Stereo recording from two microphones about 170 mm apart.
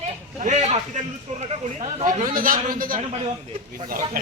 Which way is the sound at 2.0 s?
50° right (ahead or behind).